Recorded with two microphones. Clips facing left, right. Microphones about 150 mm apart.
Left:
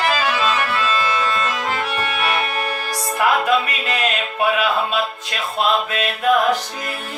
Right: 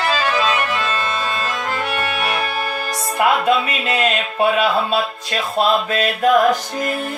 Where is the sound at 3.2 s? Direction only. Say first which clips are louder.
Right 2 dB; 25° right (ahead or behind).